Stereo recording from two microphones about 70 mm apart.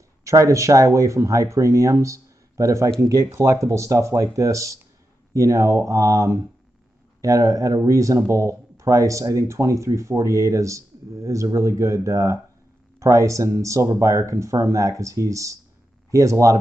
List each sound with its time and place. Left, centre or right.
0.2 s speech: right